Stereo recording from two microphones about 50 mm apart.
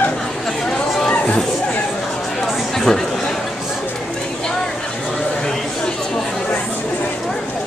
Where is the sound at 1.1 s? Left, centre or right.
Left.